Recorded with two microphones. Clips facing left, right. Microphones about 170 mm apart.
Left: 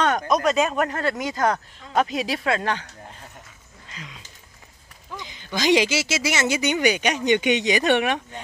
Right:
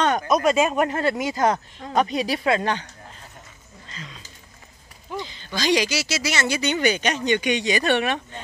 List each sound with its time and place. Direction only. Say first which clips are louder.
0.0 s speech: right 1 dB; centre (ahead or behind)
3.8 s a sound: right 1 dB; 10° left (ahead or behind)
5.3 s speech: left 3 dB; 15° left (ahead or behind)